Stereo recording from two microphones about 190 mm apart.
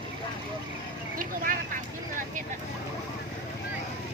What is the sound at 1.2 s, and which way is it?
Vehicle, 45° right (ahead or behind).